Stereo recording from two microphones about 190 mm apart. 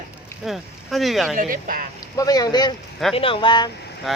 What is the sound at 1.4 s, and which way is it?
Speech, 45° right (ahead or behind).